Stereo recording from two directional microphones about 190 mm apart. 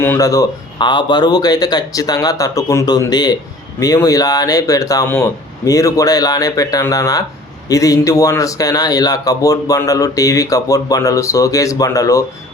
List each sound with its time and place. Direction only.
0.0 s speech: 15° left (ahead or behind)